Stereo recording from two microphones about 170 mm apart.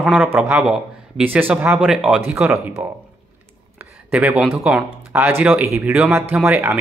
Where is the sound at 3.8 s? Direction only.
10° right (ahead or behind).